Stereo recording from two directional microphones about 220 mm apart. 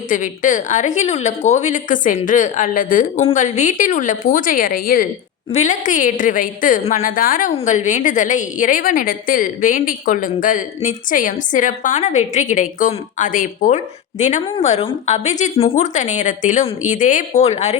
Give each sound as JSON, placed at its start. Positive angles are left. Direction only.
{"t": 0.1, "sound": "a woman's voice", "side_deg": 35}